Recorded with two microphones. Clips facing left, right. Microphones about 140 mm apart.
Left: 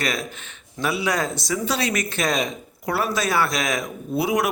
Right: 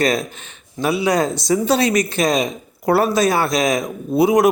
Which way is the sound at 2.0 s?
15° right (ahead or behind).